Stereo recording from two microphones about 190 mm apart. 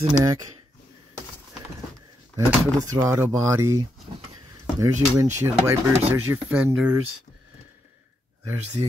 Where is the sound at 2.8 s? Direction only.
15° right (ahead or behind).